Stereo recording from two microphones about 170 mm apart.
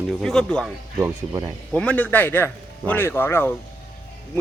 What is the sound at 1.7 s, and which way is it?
A man's voice, 5° left (ahead or behind).